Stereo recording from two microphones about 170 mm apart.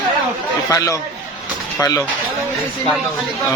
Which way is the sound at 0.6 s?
20° left (ahead or behind).